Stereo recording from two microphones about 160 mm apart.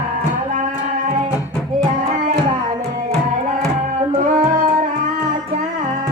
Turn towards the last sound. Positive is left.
turn(degrees=-55)  # may be behind; listen again after turning